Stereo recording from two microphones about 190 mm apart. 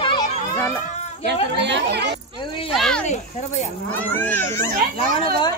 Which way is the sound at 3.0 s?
40° left (ahead or behind).